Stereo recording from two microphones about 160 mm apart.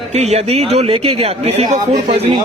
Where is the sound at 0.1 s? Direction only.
40° right (ahead or behind).